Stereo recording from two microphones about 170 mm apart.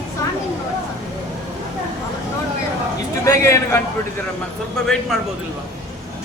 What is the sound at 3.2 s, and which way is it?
Speech, 20° left (ahead or behind).